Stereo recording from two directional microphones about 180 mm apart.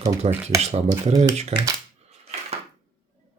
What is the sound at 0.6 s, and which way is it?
Speech, 35° right (ahead or behind).